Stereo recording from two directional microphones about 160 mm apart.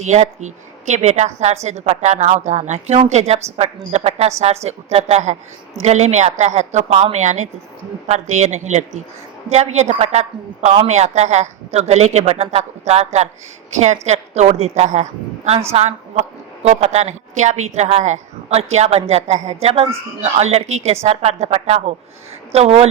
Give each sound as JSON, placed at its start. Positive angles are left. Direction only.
{"t": 0.0, "sound": "a woman's voice", "side_deg": -45}